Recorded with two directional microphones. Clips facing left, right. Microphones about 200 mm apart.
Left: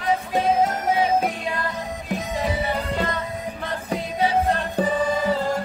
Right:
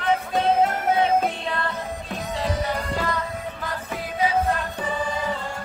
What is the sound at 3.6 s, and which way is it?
Music, 30° left (ahead or behind).